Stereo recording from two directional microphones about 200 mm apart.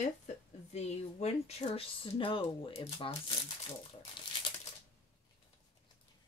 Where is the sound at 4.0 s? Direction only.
25° left (ahead or behind).